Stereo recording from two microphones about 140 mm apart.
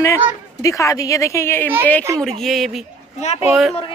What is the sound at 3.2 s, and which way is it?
Speech, 55° left (ahead or behind).